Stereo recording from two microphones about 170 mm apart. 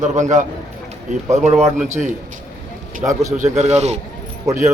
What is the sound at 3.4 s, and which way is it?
Speech, 40° right (ahead or behind).